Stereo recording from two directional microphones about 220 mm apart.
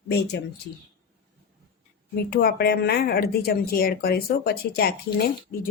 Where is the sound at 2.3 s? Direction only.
45° left (ahead or behind).